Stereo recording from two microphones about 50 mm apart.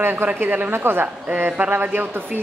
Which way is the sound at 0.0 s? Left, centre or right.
Right.